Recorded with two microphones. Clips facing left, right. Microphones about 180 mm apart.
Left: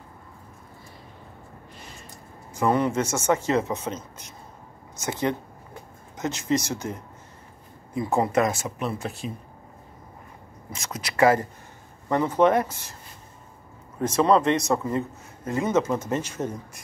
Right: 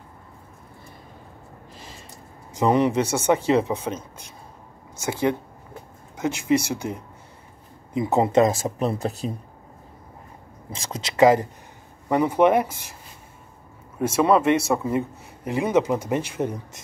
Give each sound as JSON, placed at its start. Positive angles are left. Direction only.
{"t": 2.5, "sound": "a man's voice", "side_deg": -15}
{"t": 5.0, "sound": "a man's voice", "side_deg": -10}
{"t": 10.7, "sound": "a man's voice", "side_deg": -30}
{"t": 13.9, "sound": "a man's voice", "side_deg": -10}